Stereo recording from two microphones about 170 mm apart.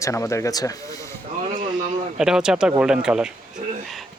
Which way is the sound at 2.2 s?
5° right (ahead or behind).